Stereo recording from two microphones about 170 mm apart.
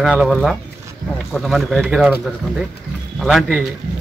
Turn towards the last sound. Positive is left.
turn(degrees=5)  # may be behind; listen again after turning